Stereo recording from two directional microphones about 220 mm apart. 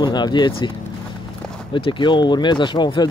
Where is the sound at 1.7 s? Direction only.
20° left (ahead or behind).